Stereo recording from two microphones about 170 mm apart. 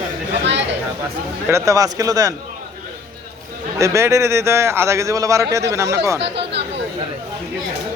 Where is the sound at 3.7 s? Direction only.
15° right (ahead or behind).